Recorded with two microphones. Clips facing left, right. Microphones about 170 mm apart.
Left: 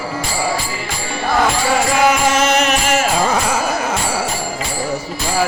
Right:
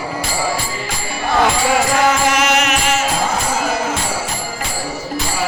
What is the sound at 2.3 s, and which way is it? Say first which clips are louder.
Music: left 1 dB; 30° left (ahead or behind).